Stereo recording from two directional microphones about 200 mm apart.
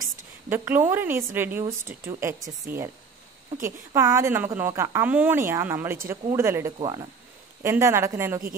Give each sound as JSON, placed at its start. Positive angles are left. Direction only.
{"t": 0.5, "sound": "a woman's voice", "side_deg": -10}